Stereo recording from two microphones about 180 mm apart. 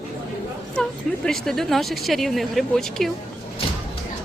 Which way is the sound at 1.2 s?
Centre (ahead or behind).